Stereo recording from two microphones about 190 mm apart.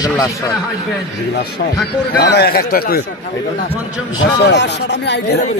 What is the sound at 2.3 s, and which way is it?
Speech, 55° left (ahead or behind).